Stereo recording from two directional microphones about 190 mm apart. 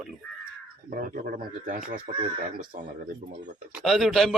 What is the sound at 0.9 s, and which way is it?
Speech, 45° right (ahead or behind).